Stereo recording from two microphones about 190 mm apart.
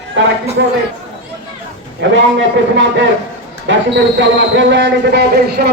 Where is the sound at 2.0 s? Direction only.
70° right (ahead or behind).